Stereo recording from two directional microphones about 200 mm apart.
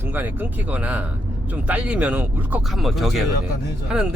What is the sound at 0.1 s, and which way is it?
Speech, 10° right (ahead or behind).